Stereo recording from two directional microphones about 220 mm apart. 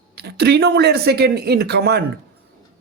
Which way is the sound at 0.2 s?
50° right (ahead or behind).